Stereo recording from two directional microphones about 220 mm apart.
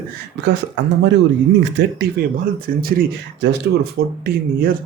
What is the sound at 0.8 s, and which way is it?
Speech, 55° right (ahead or behind).